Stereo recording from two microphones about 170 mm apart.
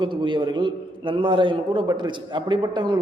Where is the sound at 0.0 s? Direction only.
30° right (ahead or behind).